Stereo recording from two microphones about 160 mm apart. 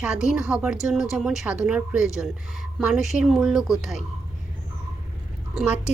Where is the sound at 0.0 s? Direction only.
5° right (ahead or behind).